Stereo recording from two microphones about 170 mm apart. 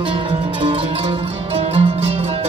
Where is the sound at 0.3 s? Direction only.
30° right (ahead or behind).